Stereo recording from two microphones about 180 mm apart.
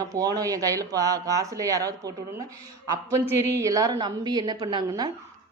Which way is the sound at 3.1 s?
15° right (ahead or behind).